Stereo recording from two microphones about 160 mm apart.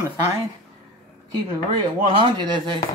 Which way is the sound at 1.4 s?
25° right (ahead or behind).